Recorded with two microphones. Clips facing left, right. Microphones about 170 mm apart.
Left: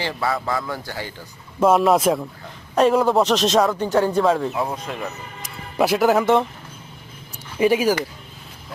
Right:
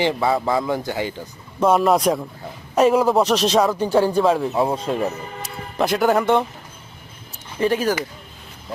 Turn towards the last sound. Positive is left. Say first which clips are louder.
# left 2 dB
turn(degrees=10)  # may be behind; listen again after turning